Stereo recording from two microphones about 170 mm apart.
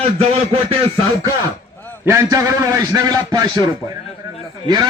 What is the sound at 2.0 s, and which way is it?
A man's voice, 15° right (ahead or behind).